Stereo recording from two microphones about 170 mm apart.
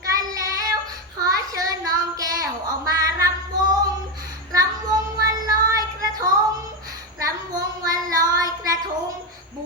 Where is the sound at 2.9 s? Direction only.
20° right (ahead or behind).